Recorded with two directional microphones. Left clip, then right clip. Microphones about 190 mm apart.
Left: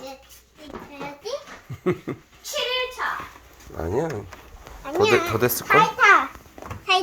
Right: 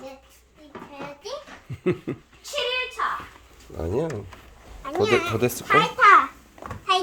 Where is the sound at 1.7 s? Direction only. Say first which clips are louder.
Even; 20° right (ahead or behind).